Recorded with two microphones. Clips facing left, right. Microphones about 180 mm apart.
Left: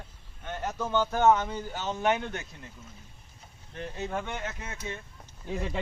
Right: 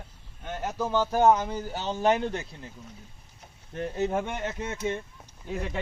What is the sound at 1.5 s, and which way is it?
Speech, 30° right (ahead or behind).